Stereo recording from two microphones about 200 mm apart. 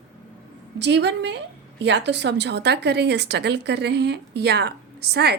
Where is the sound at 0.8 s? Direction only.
60° right (ahead or behind).